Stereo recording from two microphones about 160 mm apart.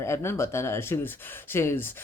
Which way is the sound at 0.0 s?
15° left (ahead or behind).